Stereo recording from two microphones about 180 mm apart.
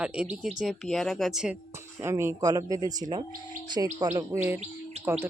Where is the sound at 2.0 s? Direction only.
15° right (ahead or behind).